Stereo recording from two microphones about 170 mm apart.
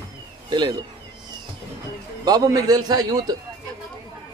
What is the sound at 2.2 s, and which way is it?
A man's voice, 20° right (ahead or behind).